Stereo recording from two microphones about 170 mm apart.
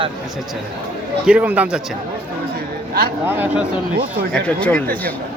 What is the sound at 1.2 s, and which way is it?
Speech, 5° right (ahead or behind).